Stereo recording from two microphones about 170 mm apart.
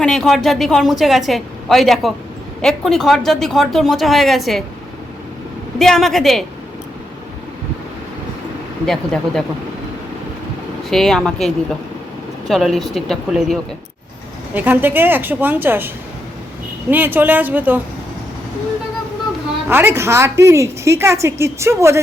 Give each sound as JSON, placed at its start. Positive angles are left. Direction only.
{"t": 0.0, "sound": "a woman's voice", "side_deg": 0}
{"t": 5.8, "sound": "a woman's voice", "side_deg": 0}
{"t": 8.9, "sound": "a woman's voice", "side_deg": 0}
{"t": 10.8, "sound": "a woman's voice", "side_deg": 0}
{"t": 16.9, "sound": "a woman's voice", "side_deg": -10}
{"t": 19.6, "sound": "a woman's voice", "side_deg": -10}